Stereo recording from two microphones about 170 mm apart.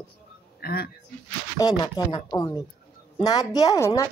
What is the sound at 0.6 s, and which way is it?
Speech, 65° left (ahead or behind).